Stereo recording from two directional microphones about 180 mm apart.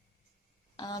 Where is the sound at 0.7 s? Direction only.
25° left (ahead or behind).